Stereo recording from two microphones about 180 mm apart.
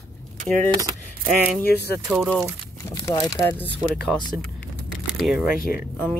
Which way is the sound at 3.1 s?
20° left (ahead or behind).